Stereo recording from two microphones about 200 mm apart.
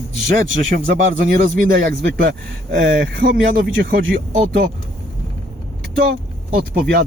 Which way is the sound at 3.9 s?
45° right (ahead or behind).